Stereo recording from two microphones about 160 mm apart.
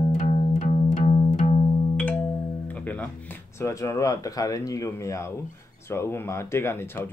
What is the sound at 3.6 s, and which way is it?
Speech, 20° left (ahead or behind).